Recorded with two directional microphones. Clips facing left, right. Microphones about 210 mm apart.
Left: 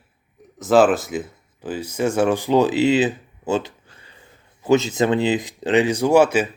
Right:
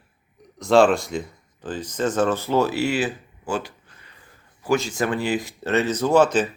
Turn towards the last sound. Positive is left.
turn(degrees=10)  # may be behind; listen again after turning